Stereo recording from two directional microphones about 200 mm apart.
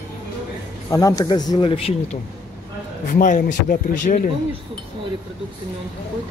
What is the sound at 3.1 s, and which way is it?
Speech, 40° left (ahead or behind).